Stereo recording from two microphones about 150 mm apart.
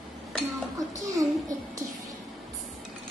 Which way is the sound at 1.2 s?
25° right (ahead or behind).